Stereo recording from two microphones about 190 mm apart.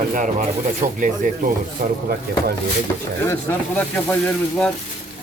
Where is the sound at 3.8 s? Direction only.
10° left (ahead or behind).